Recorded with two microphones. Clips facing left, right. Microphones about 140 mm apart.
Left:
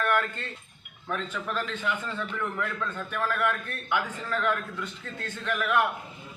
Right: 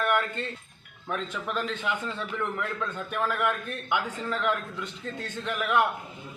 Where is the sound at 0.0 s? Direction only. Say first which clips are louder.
Right 1 dB; 15° right (ahead or behind).